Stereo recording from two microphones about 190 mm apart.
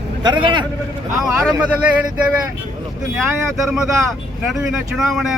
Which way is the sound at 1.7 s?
10° right (ahead or behind).